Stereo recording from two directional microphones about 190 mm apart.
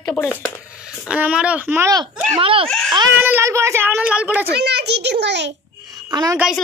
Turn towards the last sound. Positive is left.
turn(degrees=-5)  # may be behind; listen again after turning